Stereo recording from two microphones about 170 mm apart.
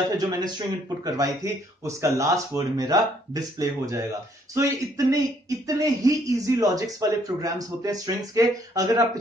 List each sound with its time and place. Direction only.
0.2 s speech: 25° right (ahead or behind)